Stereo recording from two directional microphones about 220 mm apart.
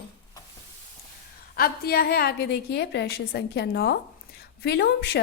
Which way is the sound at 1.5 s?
45° left (ahead or behind).